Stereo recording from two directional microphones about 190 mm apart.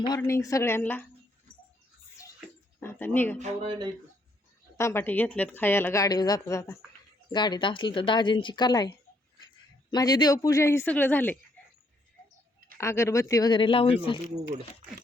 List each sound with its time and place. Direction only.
0.2 s a woman's voice: 15° left (ahead or behind)
2.8 s a woman's voice: 10° left (ahead or behind)
3.3 s a sound: 35° right (ahead or behind)
4.8 s a woman's voice: 15° left (ahead or behind)
9.9 s a woman's voice: 20° left (ahead or behind)
12.7 s a woman's voice: 15° left (ahead or behind); by 14.2 s 30° left (ahead or behind)